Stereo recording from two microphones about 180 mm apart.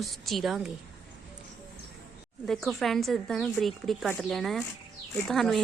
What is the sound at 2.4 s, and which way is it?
Speech, centre (ahead or behind).